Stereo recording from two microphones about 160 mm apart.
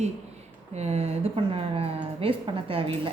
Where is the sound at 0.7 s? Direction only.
40° right (ahead or behind).